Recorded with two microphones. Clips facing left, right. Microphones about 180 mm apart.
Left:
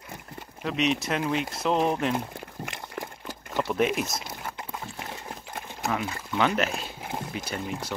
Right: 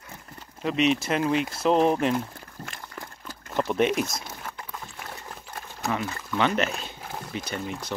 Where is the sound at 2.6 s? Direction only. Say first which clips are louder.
Left 3 dB; 20° left (ahead or behind).